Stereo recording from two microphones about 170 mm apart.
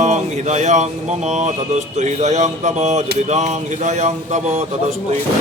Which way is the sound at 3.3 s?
40° right (ahead or behind).